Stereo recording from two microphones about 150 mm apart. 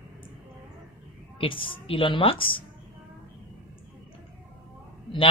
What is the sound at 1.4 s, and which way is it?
Speech, 35° left (ahead or behind).